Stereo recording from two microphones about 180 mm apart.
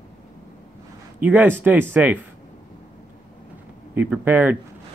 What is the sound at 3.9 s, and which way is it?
Speech, 10° right (ahead or behind).